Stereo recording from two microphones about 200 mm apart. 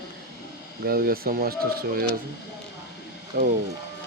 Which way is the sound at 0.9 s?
50° right (ahead or behind).